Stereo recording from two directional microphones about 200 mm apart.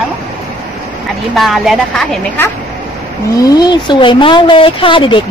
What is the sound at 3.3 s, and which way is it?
A woman's voice, 20° left (ahead or behind).